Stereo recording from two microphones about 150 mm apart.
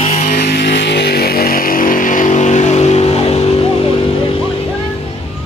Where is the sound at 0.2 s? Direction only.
90° left; by 3.9 s 40° left (ahead or behind).